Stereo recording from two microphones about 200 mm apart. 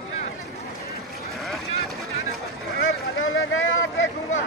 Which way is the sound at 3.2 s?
80° left.